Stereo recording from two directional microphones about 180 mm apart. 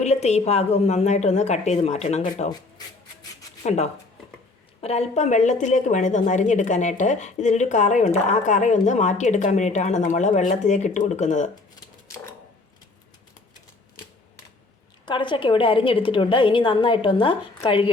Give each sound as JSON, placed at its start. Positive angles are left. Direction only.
{"t": 0.0, "sound": "a woman's voice", "side_deg": 40}
{"t": 3.6, "sound": "a woman's voice", "side_deg": 35}
{"t": 15.0, "sound": "a woman's voice", "side_deg": 25}